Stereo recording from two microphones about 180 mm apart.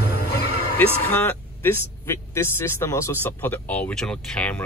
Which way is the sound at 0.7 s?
10° left (ahead or behind).